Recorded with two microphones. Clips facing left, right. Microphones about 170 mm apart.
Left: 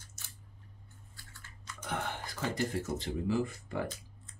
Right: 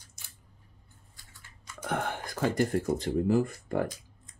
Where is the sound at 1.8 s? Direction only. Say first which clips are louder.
Right 5 dB; 50° right (ahead or behind).